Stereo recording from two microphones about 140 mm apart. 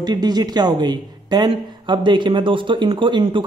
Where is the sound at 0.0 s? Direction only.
30° right (ahead or behind).